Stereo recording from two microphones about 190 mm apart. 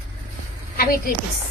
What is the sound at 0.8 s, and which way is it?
Speech, 50° left (ahead or behind).